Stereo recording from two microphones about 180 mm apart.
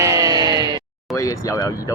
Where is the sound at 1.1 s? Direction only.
15° left (ahead or behind).